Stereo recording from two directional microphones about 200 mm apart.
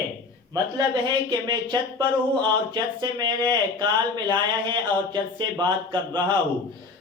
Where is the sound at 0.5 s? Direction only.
20° right (ahead or behind).